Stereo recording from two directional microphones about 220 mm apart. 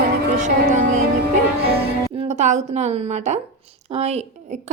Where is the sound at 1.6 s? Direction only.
25° right (ahead or behind).